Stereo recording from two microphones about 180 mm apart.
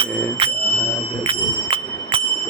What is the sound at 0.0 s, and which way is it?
Bicycle bell, 30° right (ahead or behind).